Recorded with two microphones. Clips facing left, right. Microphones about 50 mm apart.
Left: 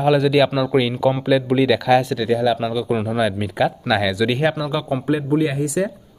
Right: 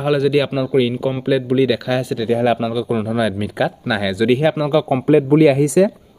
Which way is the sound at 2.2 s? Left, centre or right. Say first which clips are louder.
Right 2 dB; right.